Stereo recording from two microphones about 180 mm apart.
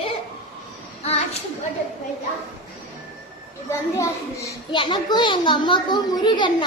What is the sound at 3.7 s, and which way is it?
A child's voice, 15° left (ahead or behind).